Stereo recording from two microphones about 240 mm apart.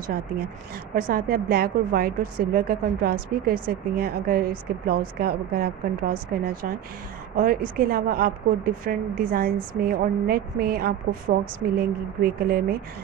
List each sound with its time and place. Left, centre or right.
0.9 s a woman's voice: right